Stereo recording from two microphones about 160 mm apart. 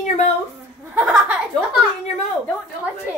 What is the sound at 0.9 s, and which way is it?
Speech, 10° right (ahead or behind).